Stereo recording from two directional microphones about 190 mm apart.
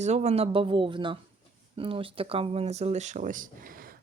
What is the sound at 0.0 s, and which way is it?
Speech, 35° right (ahead or behind).